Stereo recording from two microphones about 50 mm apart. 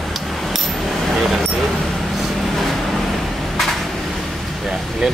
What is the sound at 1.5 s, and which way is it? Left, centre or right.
Vehicle, centre.